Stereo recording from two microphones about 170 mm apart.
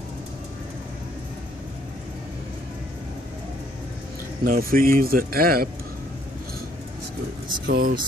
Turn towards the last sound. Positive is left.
turn(degrees=-65)  # may be behind; listen again after turning